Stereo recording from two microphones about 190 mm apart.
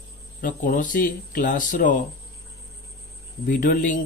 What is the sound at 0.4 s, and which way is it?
Speech, 45° left (ahead or behind).